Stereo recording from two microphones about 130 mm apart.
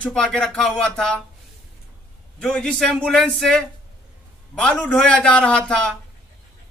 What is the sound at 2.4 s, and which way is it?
Speech, 5° left (ahead or behind).